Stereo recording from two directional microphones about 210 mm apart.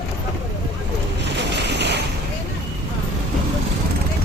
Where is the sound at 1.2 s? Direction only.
55° right (ahead or behind).